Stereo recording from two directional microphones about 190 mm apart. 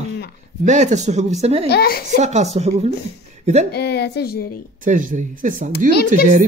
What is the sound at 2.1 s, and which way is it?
Speech, 35° right (ahead or behind).